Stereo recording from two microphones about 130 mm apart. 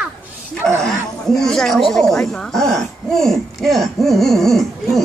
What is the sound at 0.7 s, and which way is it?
A woman's voice, 5° left (ahead or behind).